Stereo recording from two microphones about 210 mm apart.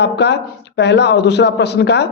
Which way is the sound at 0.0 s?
55° left (ahead or behind).